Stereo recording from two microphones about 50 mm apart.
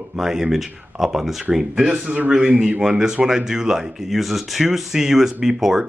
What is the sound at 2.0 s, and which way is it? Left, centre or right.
Speech, right.